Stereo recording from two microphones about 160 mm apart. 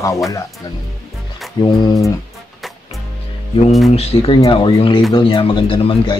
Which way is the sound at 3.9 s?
40° left (ahead or behind).